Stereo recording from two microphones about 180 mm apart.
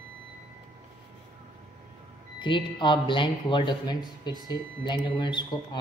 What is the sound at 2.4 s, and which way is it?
Speech, 25° left (ahead or behind).